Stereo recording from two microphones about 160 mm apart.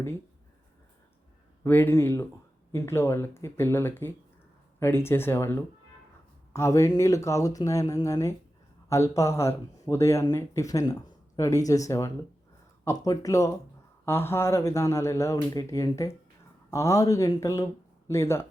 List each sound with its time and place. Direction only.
1.6 s speech: 10° left (ahead or behind)